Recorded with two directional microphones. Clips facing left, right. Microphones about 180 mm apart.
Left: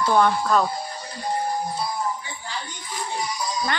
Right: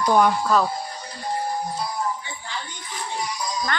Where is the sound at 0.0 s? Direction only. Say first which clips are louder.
Right 1 dB; 10° right (ahead or behind).